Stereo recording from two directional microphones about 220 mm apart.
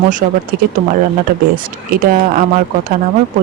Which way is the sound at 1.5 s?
40° right (ahead or behind).